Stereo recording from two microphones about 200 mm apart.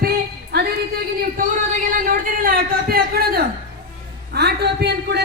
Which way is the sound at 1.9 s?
45° right (ahead or behind).